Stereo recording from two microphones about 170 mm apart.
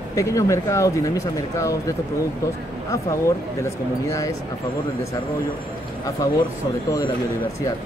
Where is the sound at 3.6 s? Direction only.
20° left (ahead or behind).